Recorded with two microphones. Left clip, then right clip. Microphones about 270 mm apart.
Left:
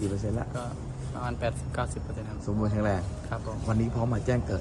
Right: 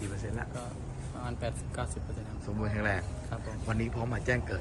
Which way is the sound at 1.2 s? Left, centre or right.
Centre.